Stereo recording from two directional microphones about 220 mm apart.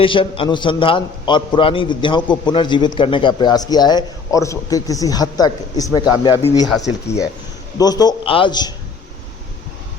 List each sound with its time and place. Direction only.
0.0 s a man's voice: 25° left (ahead or behind)
7.8 s a man's voice: 15° left (ahead or behind)